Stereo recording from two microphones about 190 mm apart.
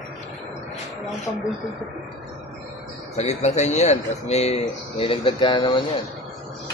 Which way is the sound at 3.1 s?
35° left (ahead or behind).